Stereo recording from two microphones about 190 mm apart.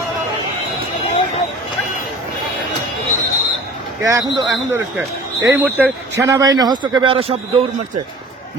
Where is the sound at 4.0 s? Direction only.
15° right (ahead or behind).